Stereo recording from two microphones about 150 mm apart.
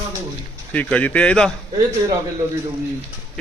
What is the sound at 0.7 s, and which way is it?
Speech, 10° left (ahead or behind).